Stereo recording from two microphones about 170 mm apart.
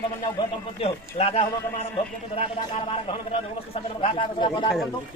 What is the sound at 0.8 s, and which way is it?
Speech, 35° left (ahead or behind).